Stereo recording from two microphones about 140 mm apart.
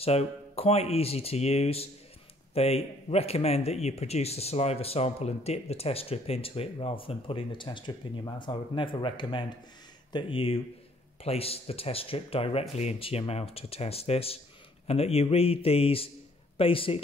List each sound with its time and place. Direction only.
0.0 s speech: 45° left (ahead or behind)